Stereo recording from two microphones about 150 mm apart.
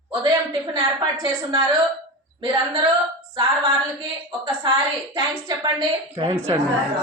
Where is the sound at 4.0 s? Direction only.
30° right (ahead or behind).